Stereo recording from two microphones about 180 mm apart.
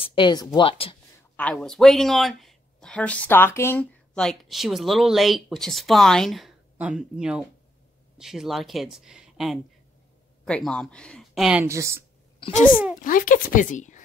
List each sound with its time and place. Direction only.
0.0 s speech: 25° left (ahead or behind)
1.3 s speech: 5° left (ahead or behind)
11.6 s speech: 15° right (ahead or behind)
12.4 s a child's voice: 25° left (ahead or behind)
13.0 s speech: 50° left (ahead or behind)